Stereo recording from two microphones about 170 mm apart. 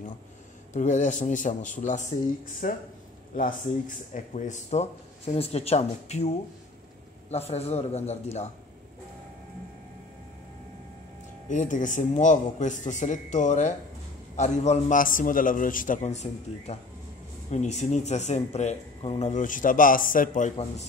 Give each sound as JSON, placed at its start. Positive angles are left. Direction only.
{"t": 0.7, "sound": "speech", "side_deg": 45}
{"t": 4.1, "sound": "speech", "side_deg": 45}
{"t": 11.4, "sound": "speech", "side_deg": 45}